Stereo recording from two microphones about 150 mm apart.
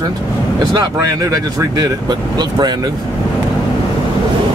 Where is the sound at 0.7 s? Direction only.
20° right (ahead or behind).